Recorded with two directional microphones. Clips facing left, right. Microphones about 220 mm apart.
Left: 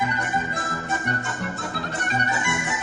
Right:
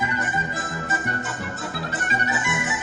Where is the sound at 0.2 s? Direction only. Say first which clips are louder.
Left 1 dB; 5° right (ahead or behind).